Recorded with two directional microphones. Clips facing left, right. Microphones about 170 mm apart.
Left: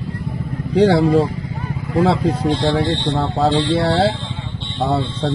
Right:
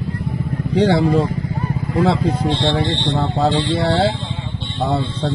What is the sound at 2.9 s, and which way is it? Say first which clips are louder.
Speech: even; 10° left (ahead or behind).